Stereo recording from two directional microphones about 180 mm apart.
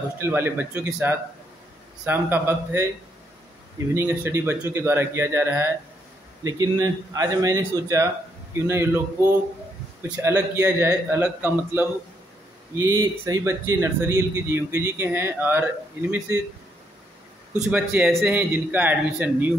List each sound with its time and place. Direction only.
0.2 s speech: 10° right (ahead or behind)
2.0 s speech: 10° right (ahead or behind)
3.9 s speech: 10° right (ahead or behind)
10.0 s a man's voice: 5° right (ahead or behind)
17.6 s speech: 5° right (ahead or behind)